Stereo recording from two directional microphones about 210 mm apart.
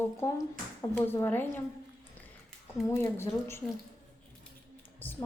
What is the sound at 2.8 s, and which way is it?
Speech, 15° left (ahead or behind).